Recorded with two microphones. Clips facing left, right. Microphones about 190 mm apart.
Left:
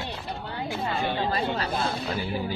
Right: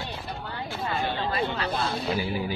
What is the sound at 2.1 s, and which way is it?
Music, 10° right (ahead or behind).